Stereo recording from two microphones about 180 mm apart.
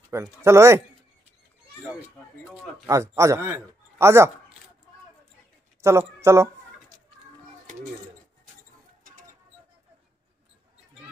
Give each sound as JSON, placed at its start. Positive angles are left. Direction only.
{"t": 0.1, "sound": "speech", "side_deg": -15}
{"t": 2.2, "sound": "speech", "side_deg": 10}
{"t": 2.9, "sound": "speech", "side_deg": -15}
{"t": 5.8, "sound": "a man's voice", "side_deg": -15}